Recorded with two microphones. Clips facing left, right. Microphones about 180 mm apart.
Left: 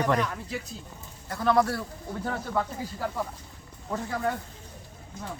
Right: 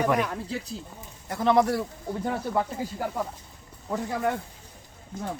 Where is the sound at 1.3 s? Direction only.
20° right (ahead or behind).